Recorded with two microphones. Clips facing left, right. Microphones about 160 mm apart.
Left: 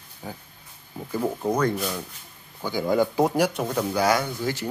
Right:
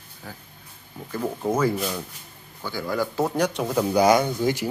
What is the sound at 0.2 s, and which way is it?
A man's voice, 20° left (ahead or behind).